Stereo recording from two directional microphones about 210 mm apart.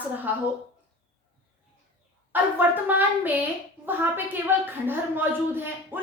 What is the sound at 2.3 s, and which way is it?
A woman's voice, 10° right (ahead or behind).